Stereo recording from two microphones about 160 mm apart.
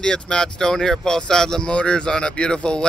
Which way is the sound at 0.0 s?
5° left (ahead or behind).